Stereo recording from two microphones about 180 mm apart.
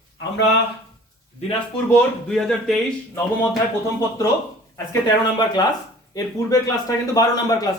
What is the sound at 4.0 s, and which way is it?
Speech, 15° left (ahead or behind).